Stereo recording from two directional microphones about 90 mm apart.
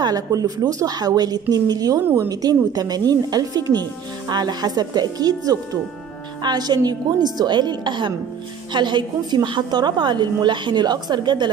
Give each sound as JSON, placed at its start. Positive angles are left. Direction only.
{"t": 0.0, "sound": "a woman's voice", "side_deg": -45}